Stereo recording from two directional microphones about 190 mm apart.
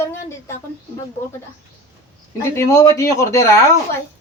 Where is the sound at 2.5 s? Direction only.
15° left (ahead or behind).